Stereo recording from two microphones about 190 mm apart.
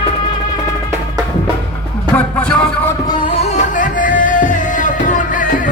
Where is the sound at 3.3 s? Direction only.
35° left (ahead or behind).